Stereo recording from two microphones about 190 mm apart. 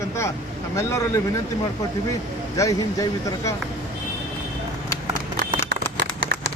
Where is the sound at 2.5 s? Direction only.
15° left (ahead or behind).